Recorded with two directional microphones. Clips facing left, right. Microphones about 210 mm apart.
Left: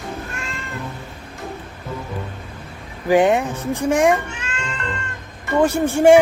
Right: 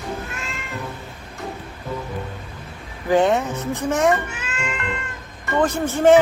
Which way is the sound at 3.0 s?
10° left (ahead or behind).